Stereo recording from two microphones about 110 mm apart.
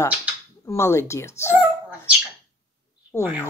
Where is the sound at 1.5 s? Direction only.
15° right (ahead or behind).